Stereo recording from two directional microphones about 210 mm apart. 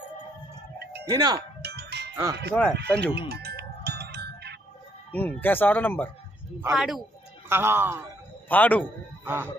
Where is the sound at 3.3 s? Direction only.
50° right (ahead or behind).